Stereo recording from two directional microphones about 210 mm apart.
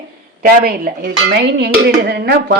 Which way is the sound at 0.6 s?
45° right (ahead or behind).